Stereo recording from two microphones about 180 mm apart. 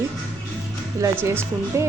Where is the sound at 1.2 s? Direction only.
15° right (ahead or behind).